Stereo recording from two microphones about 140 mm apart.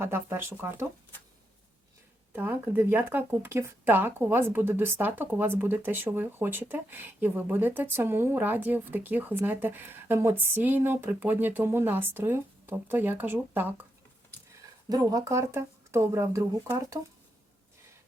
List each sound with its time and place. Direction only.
0.0 s speech: 15° right (ahead or behind)
2.3 s speech: 15° right (ahead or behind)
14.8 s speech: 25° right (ahead or behind)